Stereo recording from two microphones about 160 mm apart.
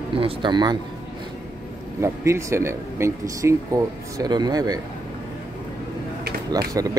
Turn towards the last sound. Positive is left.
turn(degrees=-20)  # may be behind; listen again after turning